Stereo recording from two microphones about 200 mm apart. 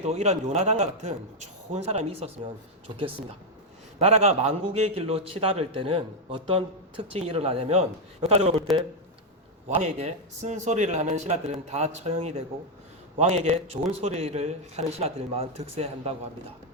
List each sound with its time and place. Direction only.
0.0 s a man's voice: 30° right (ahead or behind)
4.0 s a man's voice: 30° right (ahead or behind)
9.6 s a man's voice: 35° right (ahead or behind)